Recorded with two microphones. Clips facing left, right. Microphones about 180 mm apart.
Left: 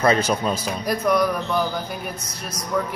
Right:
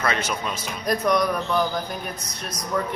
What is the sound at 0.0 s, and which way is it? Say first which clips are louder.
Speech: left 7 dB; 35° left (ahead or behind).